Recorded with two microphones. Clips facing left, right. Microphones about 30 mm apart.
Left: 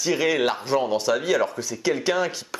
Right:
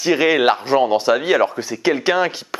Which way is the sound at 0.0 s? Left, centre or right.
Right.